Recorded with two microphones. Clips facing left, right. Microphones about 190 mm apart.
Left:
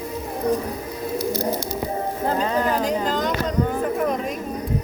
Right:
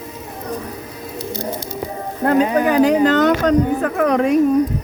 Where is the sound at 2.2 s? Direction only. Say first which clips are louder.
Right 8 dB; 70° right (ahead or behind).